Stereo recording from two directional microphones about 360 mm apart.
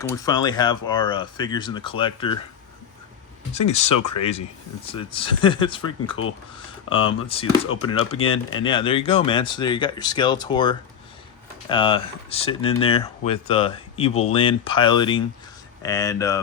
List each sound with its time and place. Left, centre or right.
0.1 s speech: centre
3.7 s speech: centre
6.1 s speech: left
7.3 s speech: centre
7.7 s speech: left
8.5 s speech: centre